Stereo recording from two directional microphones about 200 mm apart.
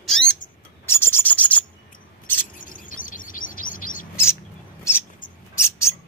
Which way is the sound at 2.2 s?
10° left (ahead or behind).